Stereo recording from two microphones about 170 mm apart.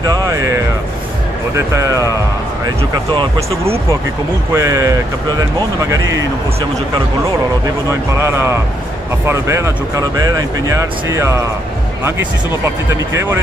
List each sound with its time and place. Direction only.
0.0 s a sound: 20° right (ahead or behind)
1.8 s speech: 20° right (ahead or behind)
3.2 s speech: 35° right (ahead or behind)
4.6 s speech: 20° right (ahead or behind)
8.2 s speech: 15° right (ahead or behind)
13.1 s speech: 15° right (ahead or behind)